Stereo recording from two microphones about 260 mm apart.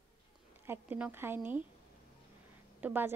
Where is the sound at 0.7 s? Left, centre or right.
Centre.